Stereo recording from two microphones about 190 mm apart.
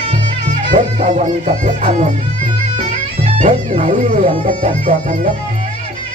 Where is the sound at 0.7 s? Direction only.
25° right (ahead or behind).